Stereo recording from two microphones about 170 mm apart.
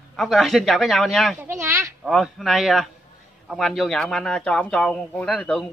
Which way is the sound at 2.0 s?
Centre (ahead or behind).